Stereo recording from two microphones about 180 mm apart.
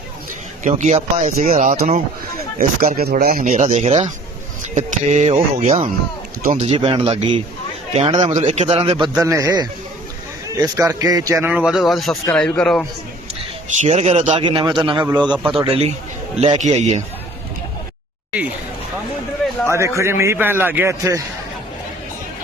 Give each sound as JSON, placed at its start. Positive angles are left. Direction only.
{"t": 0.6, "sound": "speech", "side_deg": -40}
{"t": 9.1, "sound": "a man's voice", "side_deg": -15}
{"t": 11.5, "sound": "speech", "side_deg": -5}
{"t": 13.8, "sound": "a man's voice", "side_deg": -35}
{"t": 19.7, "sound": "a man's voice", "side_deg": -15}